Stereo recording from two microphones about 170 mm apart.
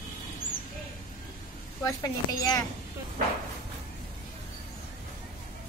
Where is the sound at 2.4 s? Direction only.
20° left (ahead or behind).